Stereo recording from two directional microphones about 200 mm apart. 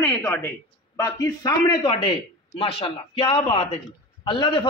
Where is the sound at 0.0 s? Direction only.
10° left (ahead or behind).